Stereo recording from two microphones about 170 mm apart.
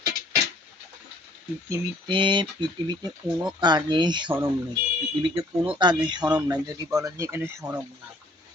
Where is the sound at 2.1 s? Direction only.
25° right (ahead or behind).